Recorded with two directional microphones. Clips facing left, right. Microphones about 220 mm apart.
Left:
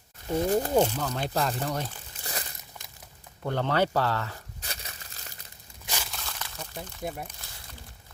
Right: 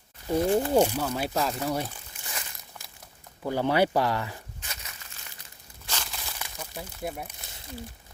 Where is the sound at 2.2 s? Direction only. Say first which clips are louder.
Left 3 dB; 35° left (ahead or behind).